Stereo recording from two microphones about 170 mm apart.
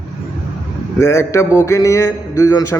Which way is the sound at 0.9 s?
15° left (ahead or behind).